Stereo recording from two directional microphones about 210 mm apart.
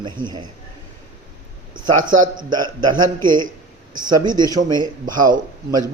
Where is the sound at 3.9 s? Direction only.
20° right (ahead or behind).